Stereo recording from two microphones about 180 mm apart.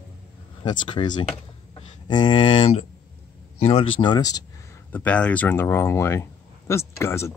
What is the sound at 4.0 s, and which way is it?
Speech, 20° left (ahead or behind).